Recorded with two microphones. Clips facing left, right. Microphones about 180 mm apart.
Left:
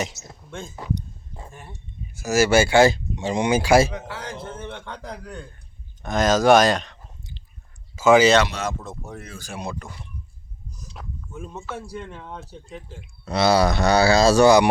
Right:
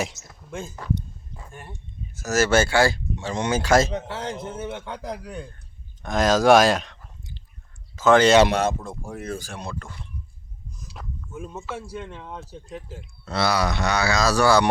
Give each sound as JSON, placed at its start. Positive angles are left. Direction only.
{"t": 0.8, "sound": "speech", "side_deg": 15}
{"t": 1.5, "sound": "speech", "side_deg": 0}
{"t": 2.1, "sound": "speech", "side_deg": 10}
{"t": 2.7, "sound": "speech", "side_deg": 20}
{"t": 3.9, "sound": "a man's voice", "side_deg": -25}
{"t": 4.4, "sound": "a man's voice", "side_deg": -10}
{"t": 10.8, "sound": "speech", "side_deg": 0}
{"t": 13.0, "sound": "speech", "side_deg": 15}
{"t": 13.5, "sound": "speech", "side_deg": 35}